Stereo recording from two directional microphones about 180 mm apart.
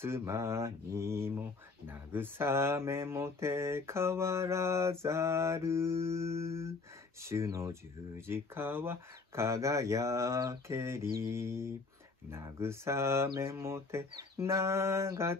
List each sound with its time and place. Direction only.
0.0 s speech: 15° right (ahead or behind)